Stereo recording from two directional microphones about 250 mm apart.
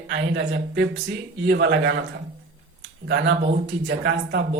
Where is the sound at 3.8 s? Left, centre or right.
Right.